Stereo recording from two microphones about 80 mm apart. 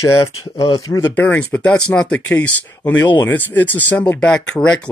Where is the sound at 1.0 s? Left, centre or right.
Left.